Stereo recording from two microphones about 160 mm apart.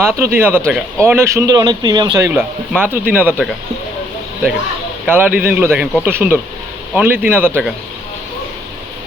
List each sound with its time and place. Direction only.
0.2 s speech: 15° right (ahead or behind)
5.0 s speech: 10° right (ahead or behind)